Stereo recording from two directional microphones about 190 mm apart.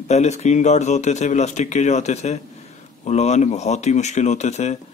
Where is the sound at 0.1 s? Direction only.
35° left (ahead or behind).